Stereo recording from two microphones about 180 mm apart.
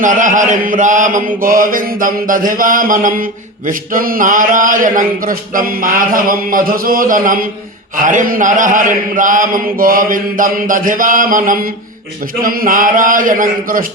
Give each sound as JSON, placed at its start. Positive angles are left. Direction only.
{"t": 0.0, "sound": "speech", "side_deg": -45}